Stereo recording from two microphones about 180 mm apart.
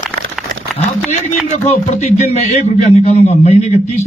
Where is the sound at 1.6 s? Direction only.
40° left (ahead or behind).